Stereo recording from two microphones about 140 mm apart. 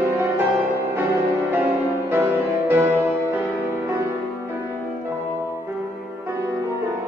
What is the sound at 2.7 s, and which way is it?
Music, 15° right (ahead or behind).